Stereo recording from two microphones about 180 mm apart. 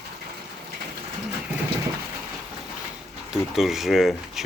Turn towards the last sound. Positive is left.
turn(degrees=0)  # may be behind; listen again after turning